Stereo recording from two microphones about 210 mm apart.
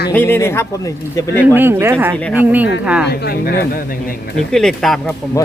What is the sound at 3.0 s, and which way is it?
Speech, 50° left (ahead or behind).